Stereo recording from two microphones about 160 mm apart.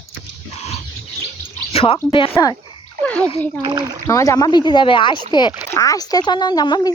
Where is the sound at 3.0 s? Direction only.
10° left (ahead or behind).